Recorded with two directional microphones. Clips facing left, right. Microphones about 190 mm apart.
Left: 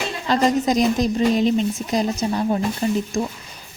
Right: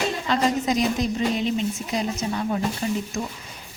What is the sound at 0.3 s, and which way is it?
A woman's voice, 40° left (ahead or behind).